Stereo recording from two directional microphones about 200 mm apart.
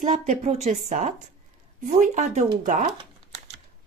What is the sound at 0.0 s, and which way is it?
Speech, 35° right (ahead or behind).